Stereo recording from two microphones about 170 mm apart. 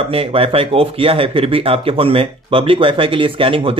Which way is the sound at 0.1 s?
35° right (ahead or behind).